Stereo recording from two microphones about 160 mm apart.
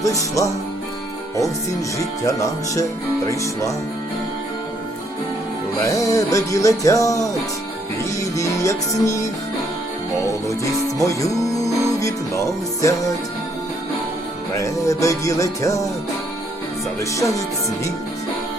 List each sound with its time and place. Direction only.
0.0 s speech: 20° left (ahead or behind)
2.0 s speech: 20° left (ahead or behind)
5.8 s speech: 20° left (ahead or behind)
11.2 s music: 20° left (ahead or behind)
14.5 s speech: 20° left (ahead or behind)
17.0 s speech: 20° left (ahead or behind)